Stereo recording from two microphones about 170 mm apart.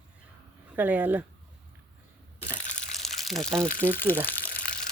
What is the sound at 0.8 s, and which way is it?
Speech, 10° right (ahead or behind).